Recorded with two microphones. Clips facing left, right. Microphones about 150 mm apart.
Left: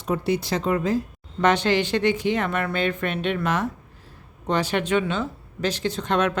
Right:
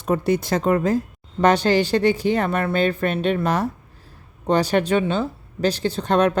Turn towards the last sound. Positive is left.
turn(degrees=-35)  # may be behind; listen again after turning